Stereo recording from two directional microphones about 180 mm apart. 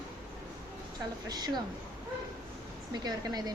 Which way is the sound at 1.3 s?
20° right (ahead or behind).